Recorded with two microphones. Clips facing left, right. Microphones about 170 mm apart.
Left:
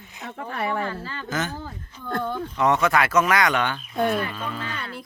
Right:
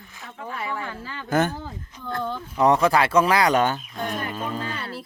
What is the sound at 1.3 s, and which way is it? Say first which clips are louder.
Speech: right 7 dB; 55° right (ahead or behind).